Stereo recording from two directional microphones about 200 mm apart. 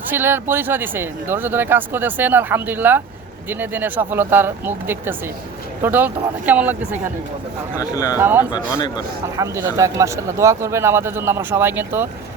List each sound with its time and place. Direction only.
0.1 s speech: 10° right (ahead or behind)
7.8 s speech: 20° left (ahead or behind)
8.1 s speech: 10° right (ahead or behind)
8.4 s speech: 20° left (ahead or behind)
9.4 s speech: 15° right (ahead or behind)